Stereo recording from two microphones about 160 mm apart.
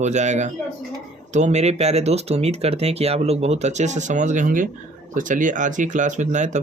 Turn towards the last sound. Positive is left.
turn(degrees=-50)  # may be behind; listen again after turning